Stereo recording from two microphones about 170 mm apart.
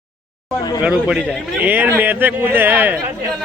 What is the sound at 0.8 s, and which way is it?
Speech, 5° right (ahead or behind).